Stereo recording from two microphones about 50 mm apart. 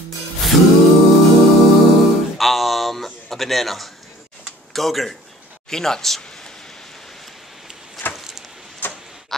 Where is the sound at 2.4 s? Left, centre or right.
Centre.